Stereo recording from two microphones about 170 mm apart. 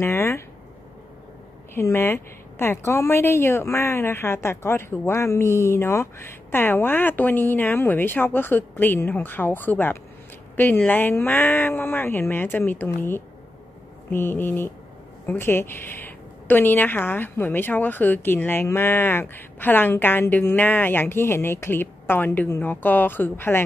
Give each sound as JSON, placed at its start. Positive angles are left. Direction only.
{"t": 0.0, "sound": "a woman's voice", "side_deg": 15}
{"t": 1.8, "sound": "a woman's voice", "side_deg": 15}